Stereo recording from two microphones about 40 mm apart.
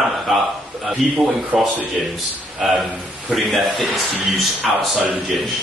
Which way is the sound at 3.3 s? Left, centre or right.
Centre.